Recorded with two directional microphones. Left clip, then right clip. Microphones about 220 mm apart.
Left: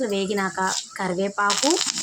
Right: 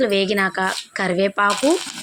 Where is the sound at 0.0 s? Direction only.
10° right (ahead or behind).